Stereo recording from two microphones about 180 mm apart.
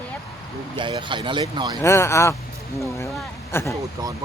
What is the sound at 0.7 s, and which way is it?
Speech, 25° right (ahead or behind).